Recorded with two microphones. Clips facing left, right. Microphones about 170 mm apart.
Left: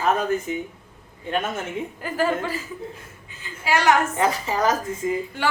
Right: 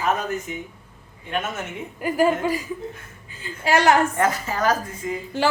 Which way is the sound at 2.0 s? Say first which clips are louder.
Right 5 dB; 10° right (ahead or behind).